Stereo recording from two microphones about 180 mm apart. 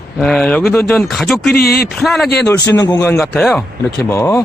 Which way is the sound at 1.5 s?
60° left (ahead or behind).